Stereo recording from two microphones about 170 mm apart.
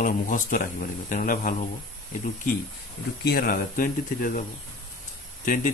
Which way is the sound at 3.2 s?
65° left (ahead or behind).